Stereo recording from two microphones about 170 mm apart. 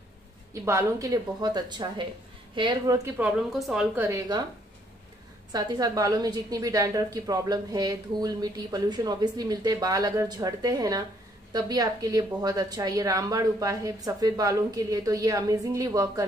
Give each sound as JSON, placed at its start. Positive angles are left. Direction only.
{"t": 0.5, "sound": "a woman's voice", "side_deg": -15}
{"t": 3.2, "sound": "a woman's voice", "side_deg": -5}
{"t": 3.9, "sound": "a woman's voice", "side_deg": -15}
{"t": 5.5, "sound": "a woman's voice", "side_deg": -20}